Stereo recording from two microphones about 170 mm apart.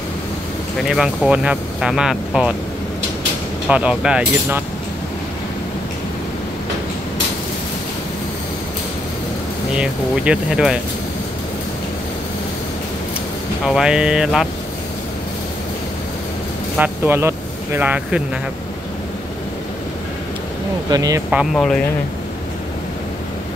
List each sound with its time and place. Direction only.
0.8 s speech: 5° right (ahead or behind)
3.6 s speech: 5° right (ahead or behind)
9.8 s speech: 5° right (ahead or behind)
13.7 s speech: 5° right (ahead or behind)
16.7 s speech: 10° right (ahead or behind)
20.9 s speech: 20° right (ahead or behind)
21.3 s speech: centre (ahead or behind)